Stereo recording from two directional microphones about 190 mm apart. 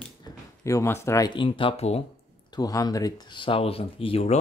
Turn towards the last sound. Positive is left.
turn(degrees=30)  # may be behind; listen again after turning